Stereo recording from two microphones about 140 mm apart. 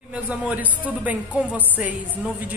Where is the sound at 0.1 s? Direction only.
10° right (ahead or behind).